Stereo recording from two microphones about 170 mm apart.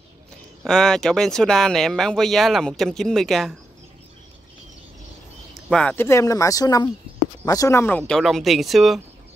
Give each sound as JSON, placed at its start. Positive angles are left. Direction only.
{"t": 0.7, "sound": "speech", "side_deg": 5}
{"t": 5.5, "sound": "speech", "side_deg": 5}
{"t": 8.1, "sound": "speech", "side_deg": 0}